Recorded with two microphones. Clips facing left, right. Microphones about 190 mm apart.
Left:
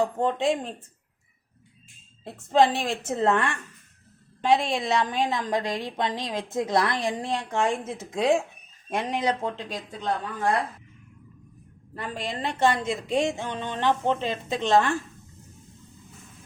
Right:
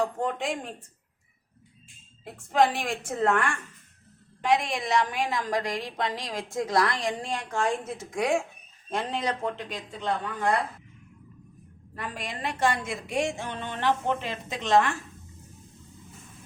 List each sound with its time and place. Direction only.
0.0 s a woman's voice: 25° left (ahead or behind)
2.2 s a woman's voice: 25° left (ahead or behind)
11.9 s a woman's voice: 25° left (ahead or behind)